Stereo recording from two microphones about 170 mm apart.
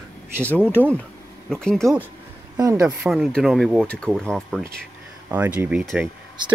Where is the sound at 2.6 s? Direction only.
20° right (ahead or behind).